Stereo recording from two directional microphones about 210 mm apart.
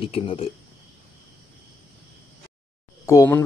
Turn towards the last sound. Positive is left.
turn(degrees=10)  # may be behind; listen again after turning